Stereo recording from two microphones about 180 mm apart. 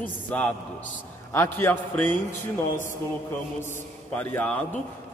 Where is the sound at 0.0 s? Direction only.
10° left (ahead or behind).